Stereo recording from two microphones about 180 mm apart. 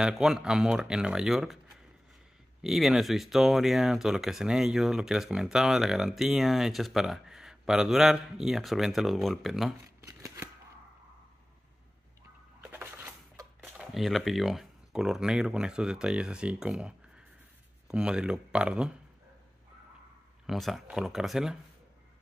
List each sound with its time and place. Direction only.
0.0 s speech: 5° right (ahead or behind)
10.0 s scissors: 15° right (ahead or behind)
12.6 s a sound: 10° right (ahead or behind)
13.9 s speech: centre (ahead or behind)
20.4 s speech: centre (ahead or behind)